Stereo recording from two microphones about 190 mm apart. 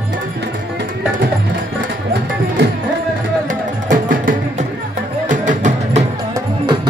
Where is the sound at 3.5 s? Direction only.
45° right (ahead or behind).